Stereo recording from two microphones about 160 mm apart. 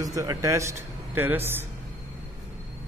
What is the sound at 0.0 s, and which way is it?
A man's voice, 20° right (ahead or behind).